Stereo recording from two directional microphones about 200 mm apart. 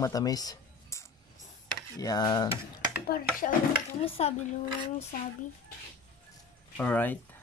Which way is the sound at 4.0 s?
30° left (ahead or behind).